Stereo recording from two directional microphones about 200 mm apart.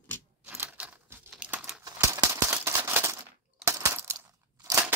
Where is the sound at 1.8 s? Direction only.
15° right (ahead or behind).